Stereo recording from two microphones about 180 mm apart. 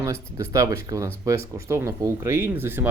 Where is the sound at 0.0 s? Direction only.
15° right (ahead or behind).